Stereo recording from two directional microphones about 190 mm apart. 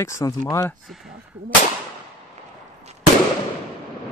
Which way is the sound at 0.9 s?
Centre (ahead or behind).